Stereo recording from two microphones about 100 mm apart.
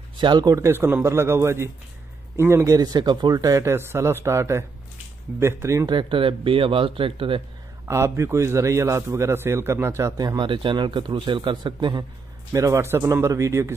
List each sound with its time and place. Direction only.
0.2 s a man's voice: 45° right (ahead or behind)
0.6 s a man's voice: 25° right (ahead or behind)
5.9 s speech: 55° right (ahead or behind)
7.8 s a man's voice: 25° right (ahead or behind)
10.4 s a man's voice: 55° right (ahead or behind)
12.5 s a man's voice: 35° right (ahead or behind)